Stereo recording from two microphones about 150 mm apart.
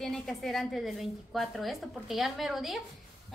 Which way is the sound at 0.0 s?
5° left (ahead or behind).